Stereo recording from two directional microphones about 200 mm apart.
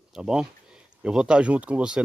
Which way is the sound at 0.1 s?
5° right (ahead or behind).